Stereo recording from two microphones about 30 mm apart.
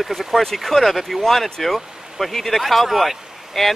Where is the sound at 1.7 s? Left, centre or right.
Centre.